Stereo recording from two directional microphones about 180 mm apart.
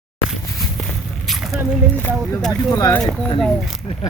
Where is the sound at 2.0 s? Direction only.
10° left (ahead or behind).